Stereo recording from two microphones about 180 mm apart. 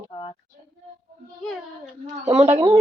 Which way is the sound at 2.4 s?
35° right (ahead or behind).